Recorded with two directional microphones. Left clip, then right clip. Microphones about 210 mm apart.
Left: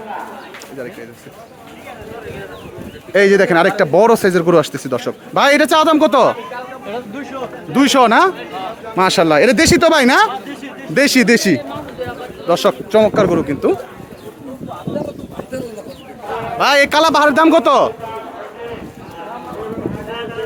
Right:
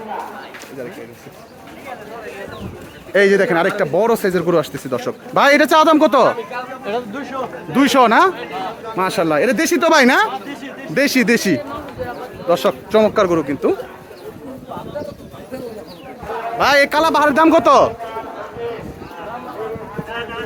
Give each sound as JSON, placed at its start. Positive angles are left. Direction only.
{"t": 3.1, "sound": "speech", "side_deg": 10}
{"t": 6.8, "sound": "speech", "side_deg": -40}
{"t": 7.7, "sound": "speech", "side_deg": 10}
{"t": 9.0, "sound": "speech", "side_deg": 20}
{"t": 16.6, "sound": "speech", "side_deg": 5}